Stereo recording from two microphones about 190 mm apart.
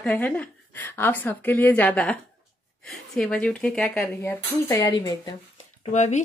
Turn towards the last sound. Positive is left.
turn(degrees=40)  # may be behind; listen again after turning